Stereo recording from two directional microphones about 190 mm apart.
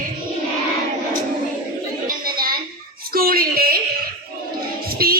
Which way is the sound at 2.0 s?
50° right (ahead or behind).